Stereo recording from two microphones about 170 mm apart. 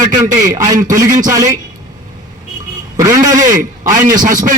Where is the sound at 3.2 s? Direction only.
20° right (ahead or behind).